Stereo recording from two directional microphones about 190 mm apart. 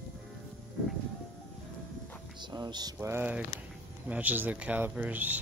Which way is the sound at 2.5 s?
20° right (ahead or behind).